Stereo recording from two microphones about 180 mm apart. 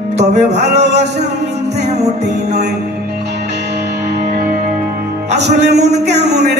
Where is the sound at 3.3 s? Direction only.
70° right (ahead or behind).